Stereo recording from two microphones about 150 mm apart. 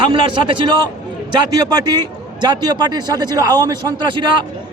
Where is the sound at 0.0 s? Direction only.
35° right (ahead or behind).